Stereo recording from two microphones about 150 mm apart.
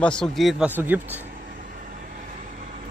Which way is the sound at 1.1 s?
65° right (ahead or behind).